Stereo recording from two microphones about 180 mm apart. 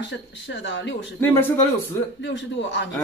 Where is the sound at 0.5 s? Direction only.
85° left.